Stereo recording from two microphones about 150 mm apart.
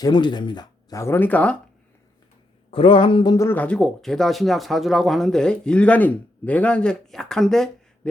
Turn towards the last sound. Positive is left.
turn(degrees=0)  # may be behind; listen again after turning